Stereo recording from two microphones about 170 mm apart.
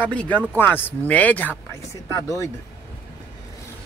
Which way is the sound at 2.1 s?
20° left (ahead or behind).